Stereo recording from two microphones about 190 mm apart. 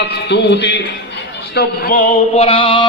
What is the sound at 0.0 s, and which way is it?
Speech, 60° left (ahead or behind).